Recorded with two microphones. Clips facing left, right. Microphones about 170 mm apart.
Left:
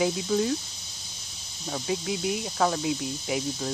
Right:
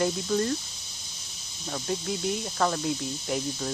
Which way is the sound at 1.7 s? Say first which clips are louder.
Left 1 dB; 5° left (ahead or behind).